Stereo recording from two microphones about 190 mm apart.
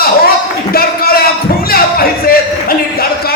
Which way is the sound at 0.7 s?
55° left (ahead or behind).